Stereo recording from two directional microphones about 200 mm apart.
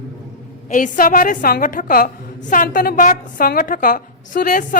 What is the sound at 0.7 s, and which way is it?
A woman's voice, 45° left (ahead or behind).